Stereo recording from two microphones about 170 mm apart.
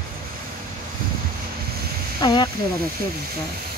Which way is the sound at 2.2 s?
25° left (ahead or behind).